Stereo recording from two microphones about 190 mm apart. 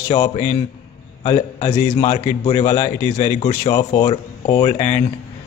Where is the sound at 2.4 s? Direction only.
35° left (ahead or behind).